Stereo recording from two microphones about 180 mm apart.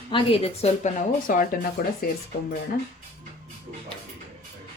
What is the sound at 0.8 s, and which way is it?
Speech, 45° left (ahead or behind).